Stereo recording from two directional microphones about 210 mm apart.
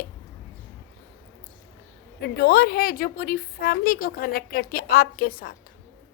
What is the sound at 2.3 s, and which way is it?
A woman's voice, 50° left (ahead or behind).